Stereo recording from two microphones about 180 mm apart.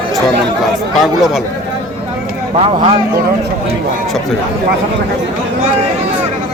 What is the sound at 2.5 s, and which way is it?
Speech, 30° right (ahead or behind).